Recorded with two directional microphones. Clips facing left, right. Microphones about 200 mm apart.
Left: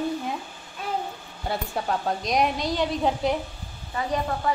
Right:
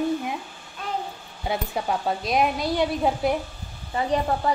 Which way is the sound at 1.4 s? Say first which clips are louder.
Right 2 dB; 10° right (ahead or behind).